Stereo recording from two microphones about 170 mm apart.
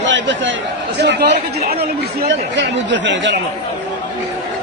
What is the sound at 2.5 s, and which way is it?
Speech, 90° right.